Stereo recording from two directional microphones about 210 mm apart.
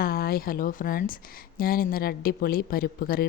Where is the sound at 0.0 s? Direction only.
45° left (ahead or behind).